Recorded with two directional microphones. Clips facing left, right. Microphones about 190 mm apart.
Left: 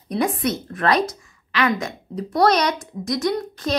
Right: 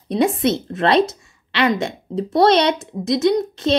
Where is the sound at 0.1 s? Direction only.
25° right (ahead or behind).